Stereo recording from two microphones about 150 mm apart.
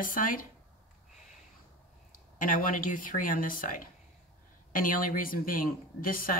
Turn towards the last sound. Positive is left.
turn(degrees=70)  # may be behind; listen again after turning